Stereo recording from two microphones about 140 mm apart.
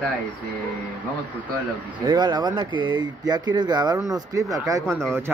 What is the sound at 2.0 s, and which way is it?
Speech, 30° right (ahead or behind).